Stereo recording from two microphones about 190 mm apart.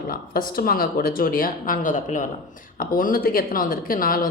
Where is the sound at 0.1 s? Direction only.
50° left (ahead or behind).